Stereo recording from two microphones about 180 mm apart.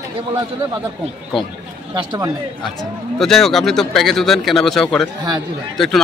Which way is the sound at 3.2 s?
Centre (ahead or behind).